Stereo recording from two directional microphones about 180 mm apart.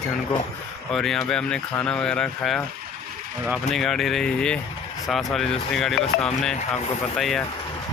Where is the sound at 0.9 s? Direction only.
5° left (ahead or behind).